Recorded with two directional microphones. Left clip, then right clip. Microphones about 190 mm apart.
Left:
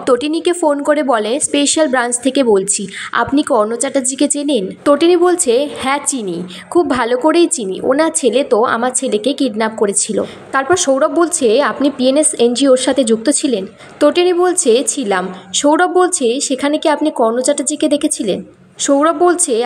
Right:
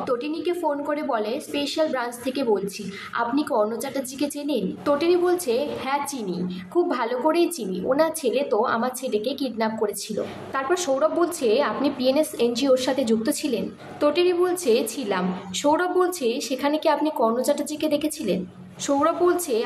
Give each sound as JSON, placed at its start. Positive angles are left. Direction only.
{"t": 0.0, "sound": "a woman's voice", "side_deg": 50}